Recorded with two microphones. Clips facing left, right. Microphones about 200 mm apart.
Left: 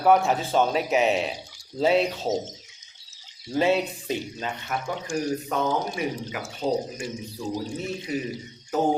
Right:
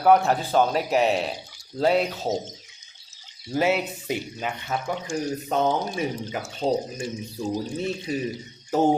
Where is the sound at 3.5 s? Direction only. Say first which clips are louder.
Left 1 dB; 5° right (ahead or behind).